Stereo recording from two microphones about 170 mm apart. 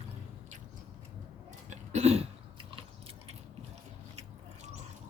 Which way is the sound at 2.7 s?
35° right (ahead or behind).